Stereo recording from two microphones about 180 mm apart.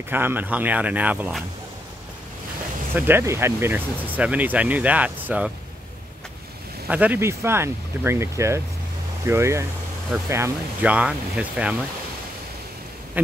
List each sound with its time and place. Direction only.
0.1 s speech: 10° right (ahead or behind)
3.0 s speech: 10° right (ahead or behind)
6.9 s speech: 10° right (ahead or behind)